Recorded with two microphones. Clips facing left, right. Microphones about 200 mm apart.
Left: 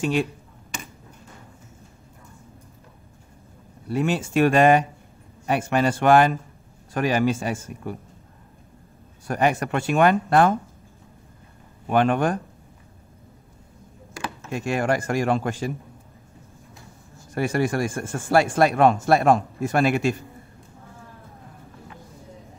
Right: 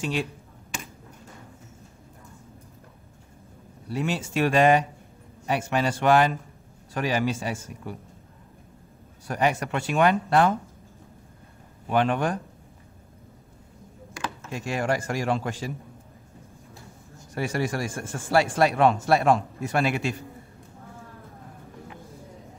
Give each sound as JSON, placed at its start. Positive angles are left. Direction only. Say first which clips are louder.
{"t": 0.0, "sound": "speech", "louder": "left 5 dB", "side_deg": 50}
{"t": 3.9, "sound": "speech", "louder": "left 5 dB", "side_deg": 50}
{"t": 9.3, "sound": "speech", "louder": "left 3 dB", "side_deg": 50}
{"t": 11.9, "sound": "speech", "louder": "left 3 dB", "side_deg": 50}
{"t": 14.5, "sound": "speech", "louder": "left 4 dB", "side_deg": 55}
{"t": 17.3, "sound": "speech", "louder": "left 4 dB", "side_deg": 55}